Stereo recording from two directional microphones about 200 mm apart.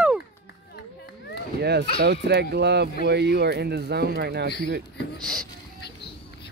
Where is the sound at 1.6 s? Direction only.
55° right (ahead or behind).